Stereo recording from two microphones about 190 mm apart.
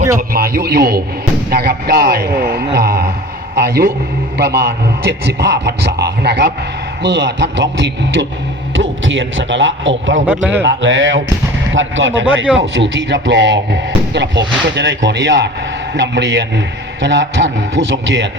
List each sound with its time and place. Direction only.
0.3 s a man's voice: 50° right (ahead or behind); by 10.2 s 75° right (ahead or behind)
10.2 s a man's voice: 10° right (ahead or behind)
10.6 s speech: 75° right (ahead or behind)